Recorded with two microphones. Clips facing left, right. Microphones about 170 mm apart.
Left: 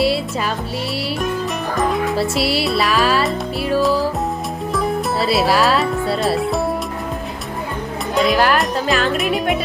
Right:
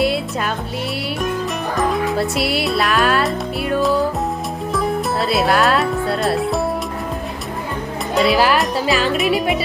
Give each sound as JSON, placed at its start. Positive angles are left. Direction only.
{"t": 1.7, "sound": "music", "side_deg": 0}
{"t": 4.7, "sound": "speech", "side_deg": 0}
{"t": 8.1, "sound": "music", "side_deg": -5}